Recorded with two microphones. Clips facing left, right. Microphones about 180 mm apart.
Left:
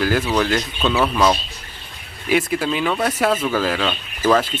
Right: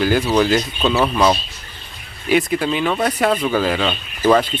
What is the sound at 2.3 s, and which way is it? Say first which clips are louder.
Speech: right 2 dB; 5° left (ahead or behind).